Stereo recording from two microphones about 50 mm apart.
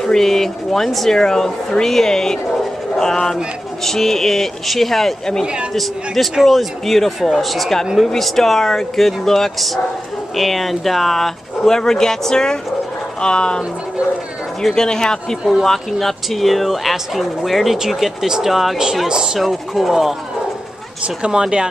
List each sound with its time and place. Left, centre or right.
0.0 s speech: centre
5.4 s a man's voice: centre
5.7 s speech: centre
14.6 s speech: centre
19.0 s speech: centre
19.4 s speech: centre
21.2 s speech: centre